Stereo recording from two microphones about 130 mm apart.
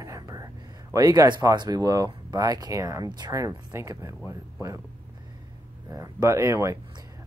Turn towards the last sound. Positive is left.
turn(degrees=-20)  # may be behind; listen again after turning